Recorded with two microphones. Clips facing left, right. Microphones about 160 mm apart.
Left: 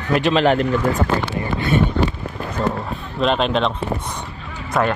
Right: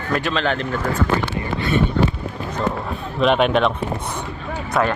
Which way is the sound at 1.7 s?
50° left (ahead or behind).